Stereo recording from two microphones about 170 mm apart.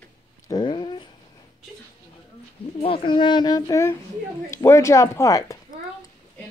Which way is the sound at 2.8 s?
30° left (ahead or behind).